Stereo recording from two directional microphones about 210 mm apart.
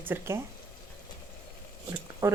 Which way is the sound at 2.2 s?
15° right (ahead or behind).